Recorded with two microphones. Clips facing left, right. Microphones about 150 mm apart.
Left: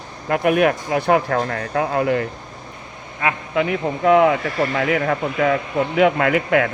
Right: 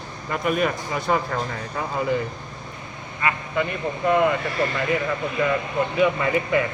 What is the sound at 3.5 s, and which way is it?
Speech, 90° left.